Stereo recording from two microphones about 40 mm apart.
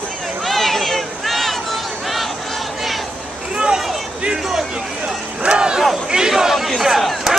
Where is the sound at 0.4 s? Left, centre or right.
Centre.